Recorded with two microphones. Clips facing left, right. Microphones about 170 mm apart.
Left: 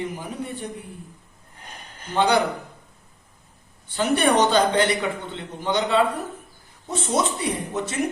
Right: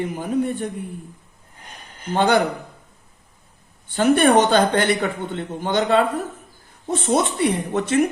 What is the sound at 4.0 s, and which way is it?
Speech, 50° right (ahead or behind).